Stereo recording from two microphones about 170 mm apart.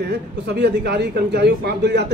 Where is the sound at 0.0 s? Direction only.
75° right (ahead or behind).